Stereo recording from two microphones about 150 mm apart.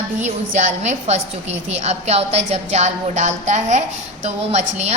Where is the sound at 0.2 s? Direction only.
50° right (ahead or behind).